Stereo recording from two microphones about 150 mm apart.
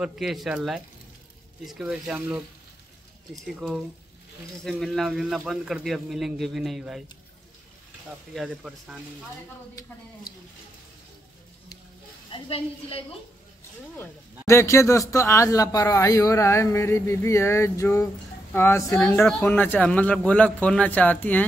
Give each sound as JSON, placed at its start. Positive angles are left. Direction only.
{"t": 0.0, "sound": "speech", "side_deg": -5}
{"t": 3.4, "sound": "speech", "side_deg": 0}
{"t": 8.4, "sound": "speech", "side_deg": -5}
{"t": 12.3, "sound": "a woman's voice", "side_deg": 40}
{"t": 13.9, "sound": "a man's voice", "side_deg": 20}